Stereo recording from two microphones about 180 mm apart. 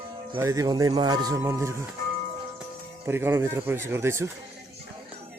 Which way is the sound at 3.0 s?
15° right (ahead or behind).